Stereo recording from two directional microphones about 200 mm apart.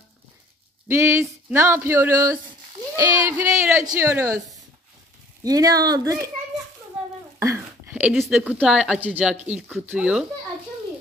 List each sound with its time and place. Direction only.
0.8 s speech: 10° right (ahead or behind)
5.4 s speech: 20° right (ahead or behind)
7.0 s a sound: 5° right (ahead or behind)
7.3 s a woman's voice: 15° right (ahead or behind)